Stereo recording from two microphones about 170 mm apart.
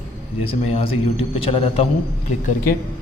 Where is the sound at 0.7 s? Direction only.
35° left (ahead or behind).